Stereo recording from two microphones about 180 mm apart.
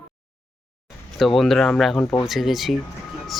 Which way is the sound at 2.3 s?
Centre (ahead or behind).